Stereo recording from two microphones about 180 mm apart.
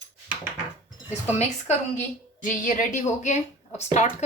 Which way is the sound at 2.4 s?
45° left (ahead or behind).